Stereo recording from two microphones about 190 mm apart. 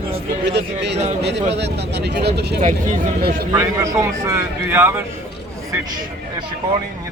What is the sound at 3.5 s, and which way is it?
A man's voice, 15° right (ahead or behind).